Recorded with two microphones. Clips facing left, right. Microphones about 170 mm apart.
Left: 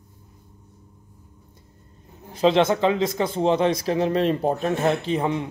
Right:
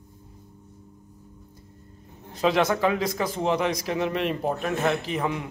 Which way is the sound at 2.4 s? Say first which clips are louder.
Left 4 dB; 25° left (ahead or behind).